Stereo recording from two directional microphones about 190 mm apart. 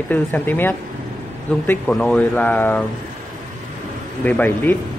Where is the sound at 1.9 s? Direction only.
5° left (ahead or behind).